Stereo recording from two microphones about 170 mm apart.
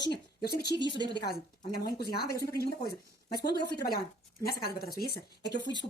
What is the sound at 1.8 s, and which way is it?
Speech, 65° left (ahead or behind).